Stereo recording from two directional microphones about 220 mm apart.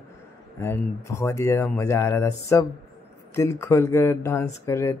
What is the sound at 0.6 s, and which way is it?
Speech, 10° left (ahead or behind).